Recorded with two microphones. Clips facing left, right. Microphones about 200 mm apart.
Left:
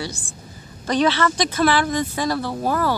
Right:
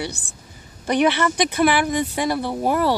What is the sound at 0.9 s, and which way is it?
Speech, 15° right (ahead or behind).